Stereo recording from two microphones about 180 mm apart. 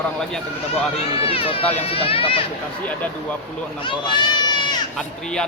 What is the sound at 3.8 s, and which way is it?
Speech, 25° left (ahead or behind).